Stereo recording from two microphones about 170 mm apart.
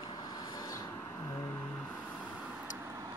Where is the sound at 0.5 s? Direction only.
20° left (ahead or behind).